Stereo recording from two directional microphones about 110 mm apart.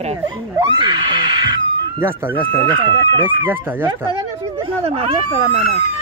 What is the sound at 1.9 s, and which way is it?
Speech, 20° right (ahead or behind).